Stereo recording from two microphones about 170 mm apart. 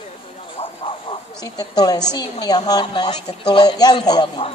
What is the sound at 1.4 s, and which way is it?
A man's voice, 20° left (ahead or behind).